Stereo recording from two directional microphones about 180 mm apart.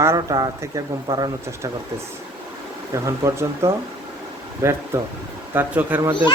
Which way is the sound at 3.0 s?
15° right (ahead or behind).